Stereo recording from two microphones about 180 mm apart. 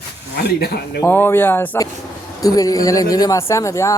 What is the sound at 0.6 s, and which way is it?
Speech, 65° left (ahead or behind).